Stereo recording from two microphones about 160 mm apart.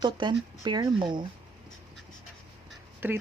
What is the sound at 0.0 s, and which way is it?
Speech, 30° right (ahead or behind).